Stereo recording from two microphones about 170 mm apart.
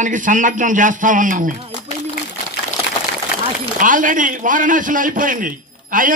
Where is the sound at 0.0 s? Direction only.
50° right (ahead or behind).